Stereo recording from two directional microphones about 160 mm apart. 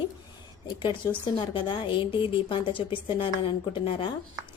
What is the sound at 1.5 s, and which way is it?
A woman's voice, 30° left (ahead or behind).